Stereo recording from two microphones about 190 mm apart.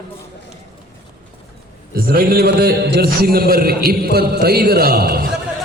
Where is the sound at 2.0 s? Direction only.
50° right (ahead or behind).